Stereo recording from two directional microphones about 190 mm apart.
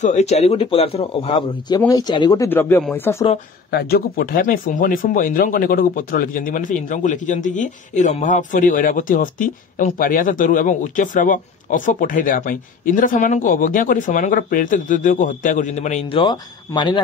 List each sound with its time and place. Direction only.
0.0 s speech: 35° left (ahead or behind)
1.9 s speech: 20° left (ahead or behind)
3.7 s speech: 55° left (ahead or behind); by 16.2 s 35° left (ahead or behind)
16.2 s speech: 25° left (ahead or behind)